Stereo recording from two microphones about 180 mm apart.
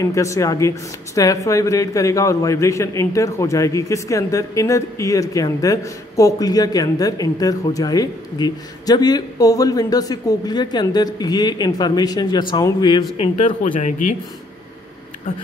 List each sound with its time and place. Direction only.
0.0 s speech: 15° left (ahead or behind)
13.2 s speech: 40° left (ahead or behind)